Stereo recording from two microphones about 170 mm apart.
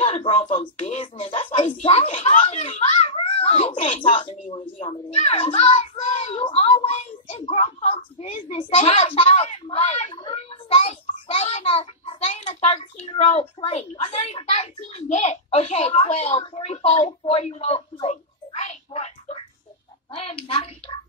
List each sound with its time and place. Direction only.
0.0 s a child's voice: 35° left (ahead or behind)
18.0 s a sound: 40° left (ahead or behind)
20.1 s a child's voice: 35° left (ahead or behind)